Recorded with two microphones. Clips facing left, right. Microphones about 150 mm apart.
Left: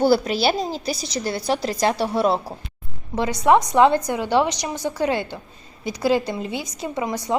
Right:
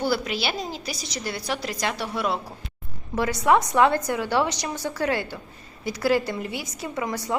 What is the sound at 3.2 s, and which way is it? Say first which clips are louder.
A woman's voice: left 3 dB; 20° left (ahead or behind).